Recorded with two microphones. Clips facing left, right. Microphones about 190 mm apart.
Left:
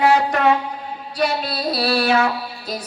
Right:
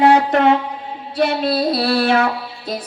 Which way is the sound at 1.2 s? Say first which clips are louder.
Right 5 dB; 25° right (ahead or behind).